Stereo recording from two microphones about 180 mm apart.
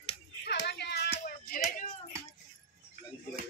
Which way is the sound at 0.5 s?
70° left (ahead or behind).